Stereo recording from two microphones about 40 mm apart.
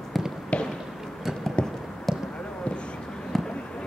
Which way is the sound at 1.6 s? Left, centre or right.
Left.